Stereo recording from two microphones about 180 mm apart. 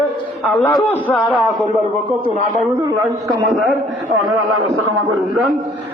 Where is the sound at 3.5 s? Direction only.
Centre (ahead or behind).